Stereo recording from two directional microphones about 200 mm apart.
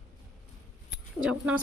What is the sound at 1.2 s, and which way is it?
Speech, 5° right (ahead or behind).